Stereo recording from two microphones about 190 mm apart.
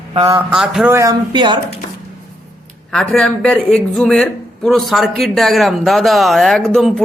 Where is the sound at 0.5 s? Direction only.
5° right (ahead or behind).